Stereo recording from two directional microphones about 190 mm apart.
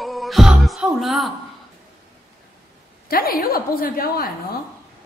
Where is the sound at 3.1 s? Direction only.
50° left (ahead or behind).